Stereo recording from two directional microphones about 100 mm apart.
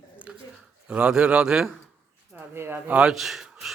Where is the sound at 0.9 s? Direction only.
10° right (ahead or behind).